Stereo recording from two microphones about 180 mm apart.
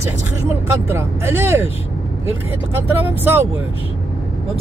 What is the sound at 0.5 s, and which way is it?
Speech, 15° right (ahead or behind).